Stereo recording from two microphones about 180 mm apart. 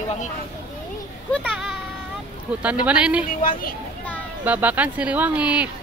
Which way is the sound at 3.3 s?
50° left (ahead or behind).